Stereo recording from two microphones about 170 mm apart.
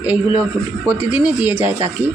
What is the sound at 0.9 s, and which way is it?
Speech, 10° right (ahead or behind).